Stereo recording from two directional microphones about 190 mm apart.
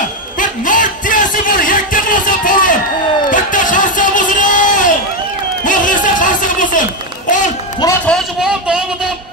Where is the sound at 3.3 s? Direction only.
45° left (ahead or behind).